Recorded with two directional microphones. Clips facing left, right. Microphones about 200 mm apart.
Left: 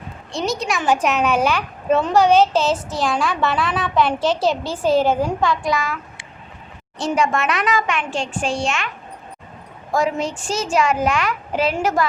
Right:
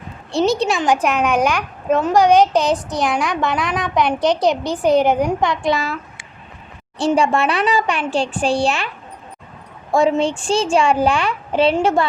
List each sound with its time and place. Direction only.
0.3 s a child's voice: 30° right (ahead or behind)
0.8 s a child's voice: 10° right (ahead or behind); by 6.0 s 30° right (ahead or behind)
7.0 s a child's voice: 30° right (ahead or behind)
9.9 s a child's voice: 30° right (ahead or behind)